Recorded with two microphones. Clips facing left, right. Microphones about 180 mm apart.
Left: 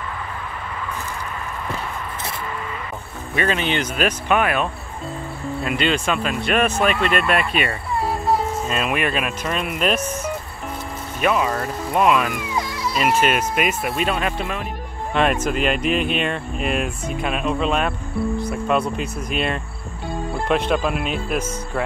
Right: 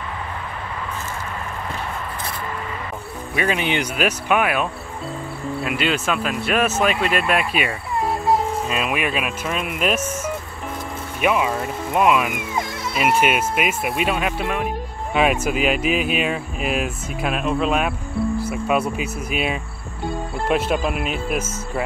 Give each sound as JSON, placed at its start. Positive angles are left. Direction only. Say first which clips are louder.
{"t": 3.3, "sound": "speech", "louder": "even", "side_deg": -10}
{"t": 12.6, "sound": "mosquito", "louder": "left 2 dB", "side_deg": -50}
{"t": 12.9, "sound": "speech", "louder": "even", "side_deg": -10}